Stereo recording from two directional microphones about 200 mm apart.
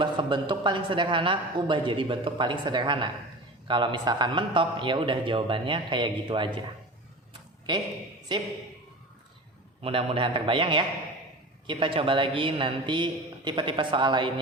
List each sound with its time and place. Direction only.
0.0 s a woman's voice: 25° right (ahead or behind)
8.3 s a woman's voice: 20° right (ahead or behind)
9.8 s a woman's voice: 30° right (ahead or behind)